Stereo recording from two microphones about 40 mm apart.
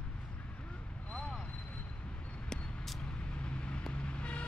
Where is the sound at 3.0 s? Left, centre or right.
Left.